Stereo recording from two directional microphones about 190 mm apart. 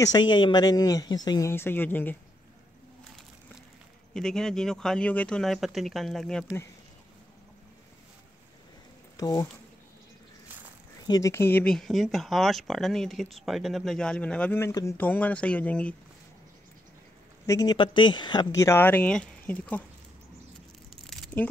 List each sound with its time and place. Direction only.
0.0 s speech: 20° left (ahead or behind)
4.1 s speech: 5° left (ahead or behind)
9.1 s speech: 20° left (ahead or behind)
11.1 s speech: 15° left (ahead or behind)
17.5 s speech: 20° left (ahead or behind)
20.9 s a sound: centre (ahead or behind)